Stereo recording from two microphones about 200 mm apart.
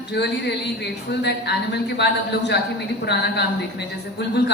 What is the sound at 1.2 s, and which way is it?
A woman's voice, 55° left (ahead or behind).